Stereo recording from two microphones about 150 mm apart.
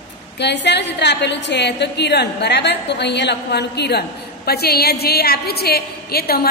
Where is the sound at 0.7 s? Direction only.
90° left.